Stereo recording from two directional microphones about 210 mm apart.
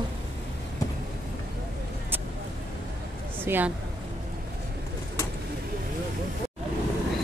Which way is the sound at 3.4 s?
10° right (ahead or behind).